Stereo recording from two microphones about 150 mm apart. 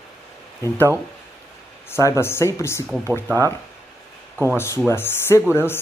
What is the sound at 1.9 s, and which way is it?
Speech, 20° left (ahead or behind).